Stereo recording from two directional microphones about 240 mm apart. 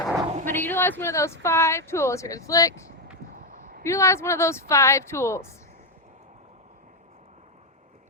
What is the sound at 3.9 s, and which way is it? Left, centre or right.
Speech, centre.